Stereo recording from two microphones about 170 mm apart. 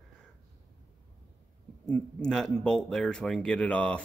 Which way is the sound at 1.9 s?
5° left (ahead or behind).